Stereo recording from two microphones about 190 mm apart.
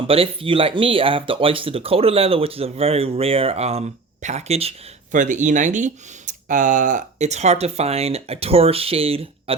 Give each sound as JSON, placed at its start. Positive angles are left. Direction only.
{"t": 0.1, "sound": "speech", "side_deg": -30}